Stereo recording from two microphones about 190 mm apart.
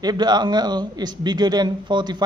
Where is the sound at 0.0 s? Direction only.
20° right (ahead or behind).